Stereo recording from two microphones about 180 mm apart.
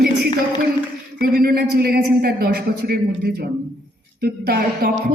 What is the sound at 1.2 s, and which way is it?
A woman's voice, 60° right (ahead or behind).